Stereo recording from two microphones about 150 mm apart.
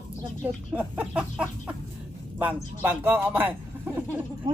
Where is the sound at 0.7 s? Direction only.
10° right (ahead or behind).